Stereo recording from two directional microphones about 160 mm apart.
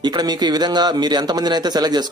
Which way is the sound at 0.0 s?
25° right (ahead or behind).